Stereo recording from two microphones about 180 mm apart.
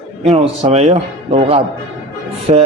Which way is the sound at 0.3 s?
35° right (ahead or behind).